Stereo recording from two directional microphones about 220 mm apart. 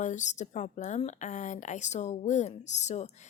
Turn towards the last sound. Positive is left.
turn(degrees=30)  # may be behind; listen again after turning